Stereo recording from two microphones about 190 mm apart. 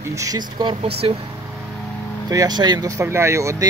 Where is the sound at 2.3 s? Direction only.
20° right (ahead or behind).